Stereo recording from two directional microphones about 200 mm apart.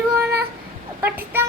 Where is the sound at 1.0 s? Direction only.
10° right (ahead or behind).